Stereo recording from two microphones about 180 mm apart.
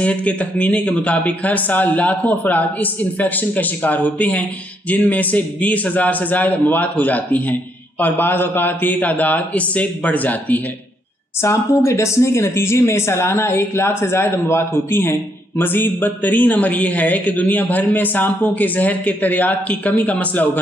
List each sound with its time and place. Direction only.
0.0 s speech: 5° left (ahead or behind)